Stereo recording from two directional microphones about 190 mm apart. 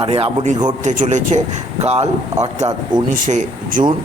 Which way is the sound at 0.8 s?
40° right (ahead or behind).